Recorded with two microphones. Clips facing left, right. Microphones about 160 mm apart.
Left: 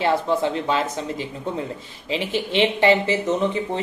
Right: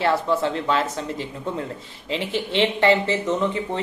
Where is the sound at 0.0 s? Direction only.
15° left (ahead or behind).